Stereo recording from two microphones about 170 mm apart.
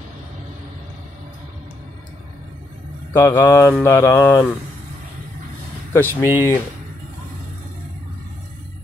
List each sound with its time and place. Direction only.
3.1 s speech: 15° left (ahead or behind)
5.9 s speech: 15° left (ahead or behind)